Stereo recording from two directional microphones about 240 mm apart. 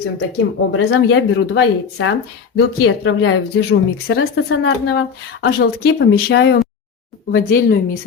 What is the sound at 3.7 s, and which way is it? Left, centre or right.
A woman's voice, left.